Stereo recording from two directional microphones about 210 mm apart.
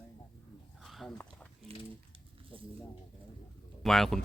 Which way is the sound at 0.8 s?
Centre (ahead or behind).